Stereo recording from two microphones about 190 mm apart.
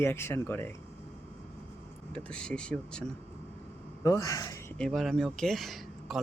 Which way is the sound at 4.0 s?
15° left (ahead or behind).